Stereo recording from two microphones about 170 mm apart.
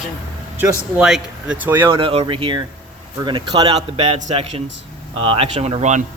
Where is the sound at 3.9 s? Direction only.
35° right (ahead or behind).